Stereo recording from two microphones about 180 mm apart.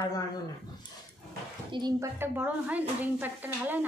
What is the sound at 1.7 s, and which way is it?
Speech, 25° right (ahead or behind).